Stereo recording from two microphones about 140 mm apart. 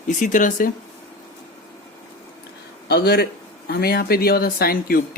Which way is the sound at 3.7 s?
90° left.